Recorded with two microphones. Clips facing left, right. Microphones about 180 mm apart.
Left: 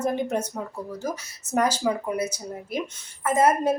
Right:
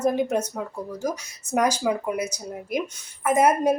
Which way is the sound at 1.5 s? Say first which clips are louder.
Right 1 dB; 10° right (ahead or behind).